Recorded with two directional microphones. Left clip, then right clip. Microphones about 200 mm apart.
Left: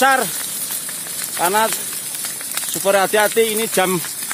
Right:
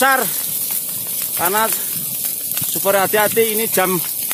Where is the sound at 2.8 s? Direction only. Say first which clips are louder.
Even; centre (ahead or behind).